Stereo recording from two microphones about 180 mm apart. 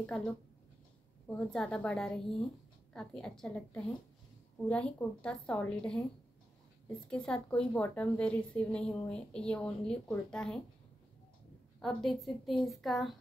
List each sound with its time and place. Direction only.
0.0 s a woman's voice: 5° left (ahead or behind)
7.1 s a woman's voice: 5° left (ahead or behind)
11.8 s a woman's voice: centre (ahead or behind)